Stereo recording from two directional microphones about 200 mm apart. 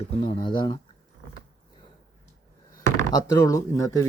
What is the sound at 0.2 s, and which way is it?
Speech, 25° left (ahead or behind).